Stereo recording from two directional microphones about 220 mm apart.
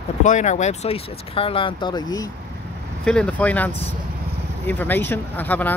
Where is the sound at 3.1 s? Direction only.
5° left (ahead or behind).